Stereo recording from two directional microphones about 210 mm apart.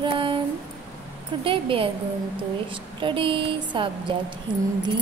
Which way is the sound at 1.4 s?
25° right (ahead or behind).